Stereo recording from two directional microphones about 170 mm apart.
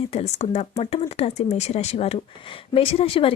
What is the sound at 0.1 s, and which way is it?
Speech, 40° left (ahead or behind).